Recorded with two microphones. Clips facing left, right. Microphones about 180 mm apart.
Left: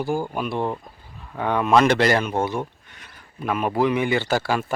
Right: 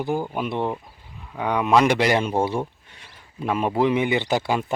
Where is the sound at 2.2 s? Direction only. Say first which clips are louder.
Right 1 dB; 30° right (ahead or behind).